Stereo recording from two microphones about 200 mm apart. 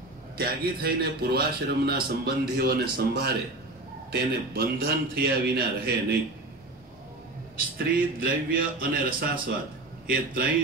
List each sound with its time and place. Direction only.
0.4 s a man's voice: 50° right (ahead or behind)
7.5 s a man's voice: 50° right (ahead or behind)